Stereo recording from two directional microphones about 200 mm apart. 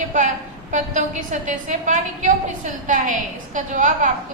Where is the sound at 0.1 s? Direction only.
40° right (ahead or behind).